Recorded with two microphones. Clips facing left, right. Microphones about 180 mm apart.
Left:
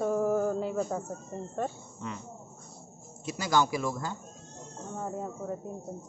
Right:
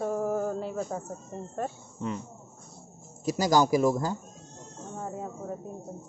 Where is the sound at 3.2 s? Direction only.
40° right (ahead or behind).